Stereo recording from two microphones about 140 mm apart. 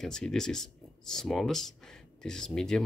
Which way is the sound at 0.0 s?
5° left (ahead or behind).